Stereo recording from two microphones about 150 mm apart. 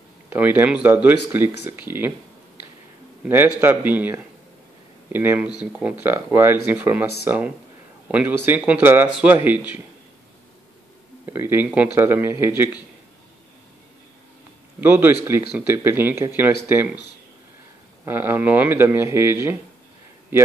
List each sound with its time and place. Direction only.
0.3 s speech: 10° right (ahead or behind)
3.3 s speech: 15° right (ahead or behind)
11.2 s speech: 15° right (ahead or behind)
14.8 s speech: 10° right (ahead or behind)
18.0 s speech: 15° right (ahead or behind)